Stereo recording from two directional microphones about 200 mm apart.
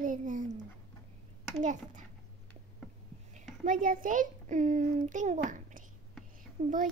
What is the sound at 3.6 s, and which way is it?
A child's voice, 40° right (ahead or behind).